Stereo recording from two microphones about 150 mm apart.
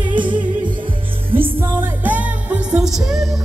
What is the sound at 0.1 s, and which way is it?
Music, 35° right (ahead or behind).